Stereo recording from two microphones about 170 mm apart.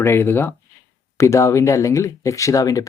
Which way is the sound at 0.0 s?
15° left (ahead or behind).